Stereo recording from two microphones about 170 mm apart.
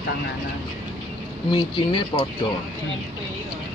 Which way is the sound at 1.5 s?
30° left (ahead or behind).